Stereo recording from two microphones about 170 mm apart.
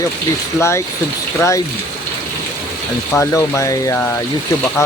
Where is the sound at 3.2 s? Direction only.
15° left (ahead or behind).